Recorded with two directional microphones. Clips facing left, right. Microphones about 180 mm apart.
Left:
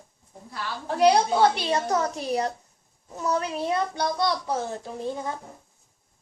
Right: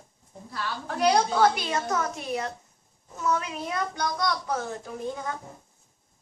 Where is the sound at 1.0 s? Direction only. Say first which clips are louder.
Left 3 dB; 25° left (ahead or behind).